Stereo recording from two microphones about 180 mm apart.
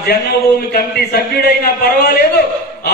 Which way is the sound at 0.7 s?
60° left (ahead or behind).